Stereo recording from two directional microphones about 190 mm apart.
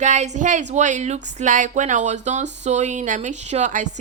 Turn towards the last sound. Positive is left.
turn(degrees=-40)  # may be behind; listen again after turning